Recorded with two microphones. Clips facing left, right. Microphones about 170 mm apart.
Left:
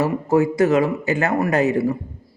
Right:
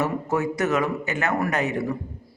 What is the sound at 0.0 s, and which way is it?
Speech, 30° left (ahead or behind).